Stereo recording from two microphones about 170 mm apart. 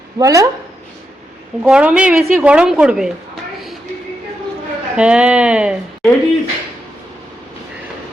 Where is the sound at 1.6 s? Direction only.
5° right (ahead or behind).